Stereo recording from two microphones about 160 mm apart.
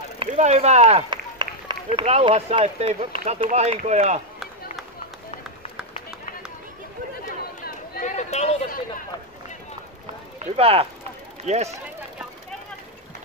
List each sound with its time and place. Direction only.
0.3 s speech: 45° right (ahead or behind)
1.1 s run: 30° right (ahead or behind)
2.0 s speech: 35° right (ahead or behind)
7.2 s chatter: 70° left (ahead or behind)
8.0 s a sound: 45° left (ahead or behind)
10.4 s speech: 40° right (ahead or behind)